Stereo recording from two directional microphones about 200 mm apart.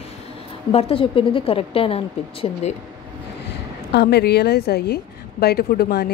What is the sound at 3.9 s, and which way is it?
A woman's voice, 55° left (ahead or behind).